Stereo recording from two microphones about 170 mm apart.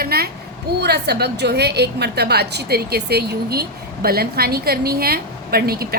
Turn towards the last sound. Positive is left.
turn(degrees=-65)  # may be behind; listen again after turning